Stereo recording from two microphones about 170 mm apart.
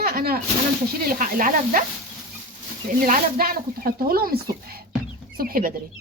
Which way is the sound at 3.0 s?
55° right (ahead or behind).